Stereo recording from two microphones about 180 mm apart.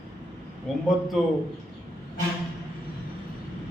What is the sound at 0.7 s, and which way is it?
Speech, centre (ahead or behind).